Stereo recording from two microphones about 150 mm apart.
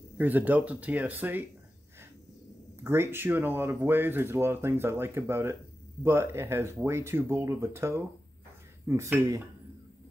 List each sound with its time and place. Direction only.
0.2 s speech: 10° right (ahead or behind)
2.8 s speech: 15° right (ahead or behind)